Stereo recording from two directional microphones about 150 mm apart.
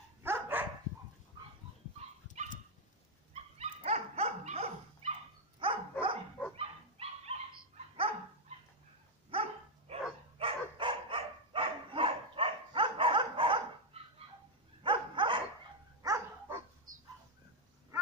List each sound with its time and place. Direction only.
0.2 s dog: 15° right (ahead or behind)
3.5 s dog: 45° right (ahead or behind)
9.3 s dog: 40° right (ahead or behind)
16.0 s dog: 20° right (ahead or behind)